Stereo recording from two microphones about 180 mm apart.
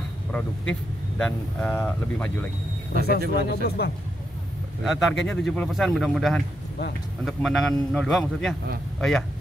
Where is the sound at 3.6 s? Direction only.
60° left (ahead or behind).